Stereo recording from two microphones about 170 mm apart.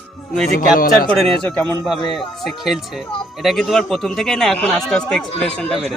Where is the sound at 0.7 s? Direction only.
60° left (ahead or behind).